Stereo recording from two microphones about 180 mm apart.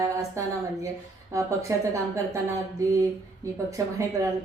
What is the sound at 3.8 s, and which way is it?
Speech, 20° right (ahead or behind).